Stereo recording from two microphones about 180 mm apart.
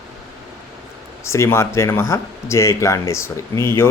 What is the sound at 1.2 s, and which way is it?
Speech, 15° left (ahead or behind).